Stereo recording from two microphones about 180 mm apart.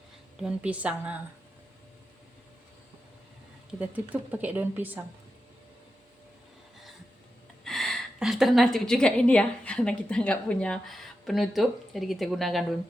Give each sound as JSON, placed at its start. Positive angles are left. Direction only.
{"t": 0.3, "sound": "a woman's voice", "side_deg": -5}
{"t": 3.8, "sound": "a woman's voice", "side_deg": -10}
{"t": 7.6, "sound": "a woman's voice", "side_deg": 0}